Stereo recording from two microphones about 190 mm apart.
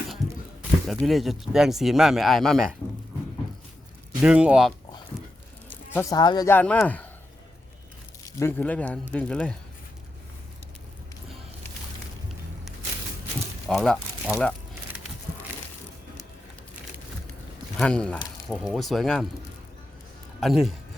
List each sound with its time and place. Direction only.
0.2 s a sound: centre (ahead or behind)
0.9 s speech: centre (ahead or behind)
4.2 s speech: 5° right (ahead or behind)
5.6 s speech: 10° left (ahead or behind)
6.5 s speech: 5° left (ahead or behind)
8.4 s speech: 10° left (ahead or behind)
13.7 s speech: centre (ahead or behind)
17.7 s speech: 5° left (ahead or behind)
20.4 s speech: centre (ahead or behind)